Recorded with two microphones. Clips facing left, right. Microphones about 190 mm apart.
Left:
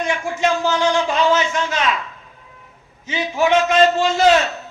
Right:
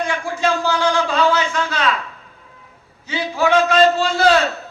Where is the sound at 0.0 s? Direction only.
25° left (ahead or behind).